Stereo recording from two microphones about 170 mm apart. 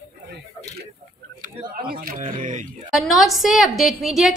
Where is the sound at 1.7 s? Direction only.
60° right (ahead or behind).